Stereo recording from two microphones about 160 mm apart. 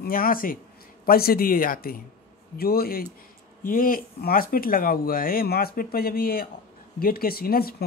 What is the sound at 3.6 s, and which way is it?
Speech, 60° left (ahead or behind).